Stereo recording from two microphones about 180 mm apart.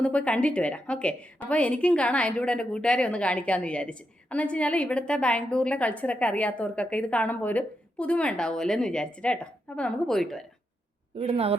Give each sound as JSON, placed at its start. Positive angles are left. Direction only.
{"t": 0.0, "sound": "a woman's voice", "side_deg": 5}
{"t": 11.2, "sound": "speech", "side_deg": -35}